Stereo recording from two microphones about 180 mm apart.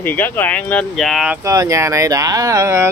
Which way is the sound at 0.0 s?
10° left (ahead or behind).